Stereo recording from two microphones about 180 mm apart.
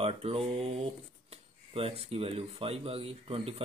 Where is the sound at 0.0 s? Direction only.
35° right (ahead or behind).